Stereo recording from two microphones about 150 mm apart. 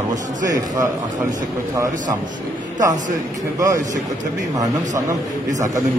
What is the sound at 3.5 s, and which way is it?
Speech, 20° right (ahead or behind).